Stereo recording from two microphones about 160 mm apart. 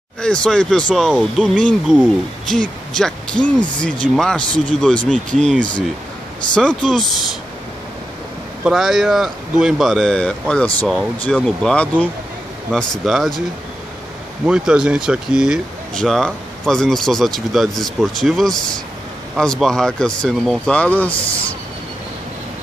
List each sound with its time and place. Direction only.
0.2 s speech: 5° left (ahead or behind)
8.6 s speech: centre (ahead or behind)
14.4 s speech: 5° right (ahead or behind)